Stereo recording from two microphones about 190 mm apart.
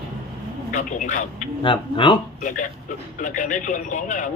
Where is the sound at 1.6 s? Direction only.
25° left (ahead or behind).